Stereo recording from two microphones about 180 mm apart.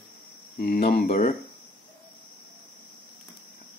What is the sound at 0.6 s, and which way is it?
Speech, 60° left (ahead or behind).